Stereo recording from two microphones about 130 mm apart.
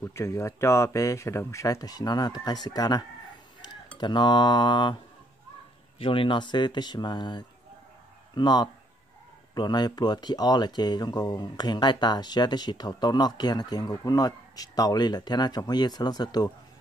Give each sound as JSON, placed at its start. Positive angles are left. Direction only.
{"t": 0.0, "sound": "speech", "side_deg": 20}
{"t": 5.9, "sound": "speech", "side_deg": 40}